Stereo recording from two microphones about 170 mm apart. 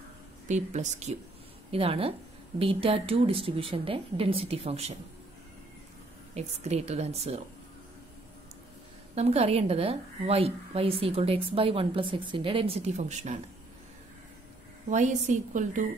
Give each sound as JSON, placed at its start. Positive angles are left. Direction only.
{"t": 0.5, "sound": "a woman's voice", "side_deg": -45}
{"t": 6.3, "sound": "a woman's voice", "side_deg": -40}
{"t": 9.1, "sound": "a woman's voice", "side_deg": -40}
{"t": 14.9, "sound": "a woman's voice", "side_deg": -45}